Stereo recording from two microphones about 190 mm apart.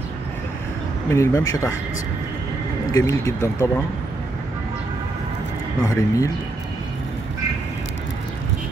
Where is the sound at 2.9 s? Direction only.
15° left (ahead or behind).